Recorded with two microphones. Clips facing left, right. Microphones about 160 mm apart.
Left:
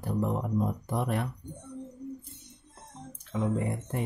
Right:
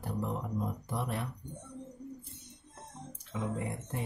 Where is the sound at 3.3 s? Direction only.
50° left (ahead or behind).